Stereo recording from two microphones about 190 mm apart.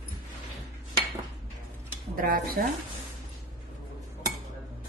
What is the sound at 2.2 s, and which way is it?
Speech, 50° right (ahead or behind).